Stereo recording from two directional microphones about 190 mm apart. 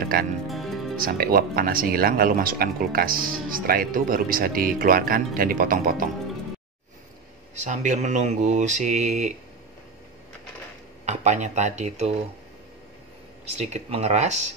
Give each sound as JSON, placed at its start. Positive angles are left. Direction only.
{"t": 0.0, "sound": "speech", "side_deg": -50}
{"t": 0.5, "sound": "music", "side_deg": 0}
{"t": 0.9, "sound": "speech", "side_deg": -50}
{"t": 7.6, "sound": "speech", "side_deg": -40}
{"t": 11.1, "sound": "speech", "side_deg": -40}
{"t": 13.6, "sound": "speech", "side_deg": -35}